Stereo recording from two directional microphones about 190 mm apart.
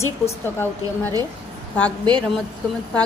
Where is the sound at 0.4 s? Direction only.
10° left (ahead or behind).